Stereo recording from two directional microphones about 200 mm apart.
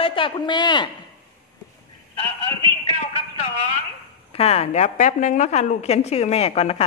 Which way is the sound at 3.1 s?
30° left (ahead or behind).